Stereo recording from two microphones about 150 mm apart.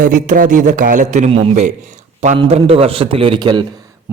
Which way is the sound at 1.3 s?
40° right (ahead or behind).